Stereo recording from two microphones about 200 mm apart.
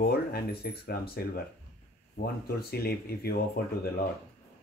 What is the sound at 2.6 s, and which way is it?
Speech, 50° left (ahead or behind).